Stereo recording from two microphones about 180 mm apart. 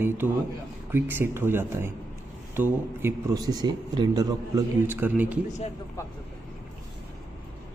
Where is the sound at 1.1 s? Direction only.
15° right (ahead or behind).